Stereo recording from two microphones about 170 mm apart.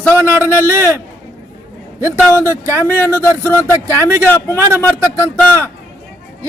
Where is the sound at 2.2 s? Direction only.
15° left (ahead or behind).